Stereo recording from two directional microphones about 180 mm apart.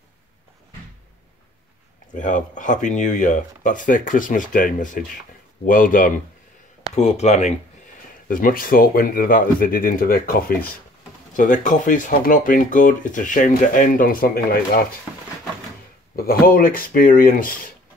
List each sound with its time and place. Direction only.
2.1 s speech: 45° left (ahead or behind)
7.0 s speech: 40° left (ahead or behind)
8.3 s speech: 50° left (ahead or behind)
16.2 s speech: 55° left (ahead or behind)